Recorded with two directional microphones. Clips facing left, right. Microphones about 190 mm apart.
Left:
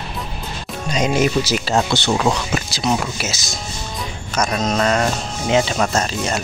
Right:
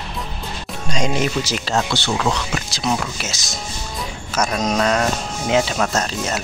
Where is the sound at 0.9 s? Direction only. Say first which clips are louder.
Left 3 dB; 5° left (ahead or behind).